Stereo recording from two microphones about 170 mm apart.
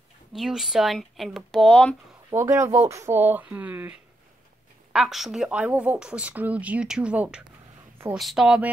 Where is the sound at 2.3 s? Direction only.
15° right (ahead or behind).